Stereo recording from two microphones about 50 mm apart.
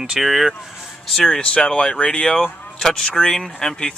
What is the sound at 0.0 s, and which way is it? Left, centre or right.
Speech, centre.